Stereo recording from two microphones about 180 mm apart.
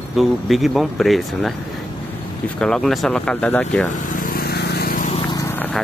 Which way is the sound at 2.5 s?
5° left (ahead or behind).